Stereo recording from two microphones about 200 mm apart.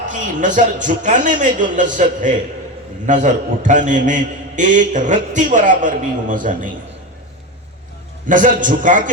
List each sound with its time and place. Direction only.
0.1 s a man's voice: 40° right (ahead or behind)
8.3 s a man's voice: 40° right (ahead or behind)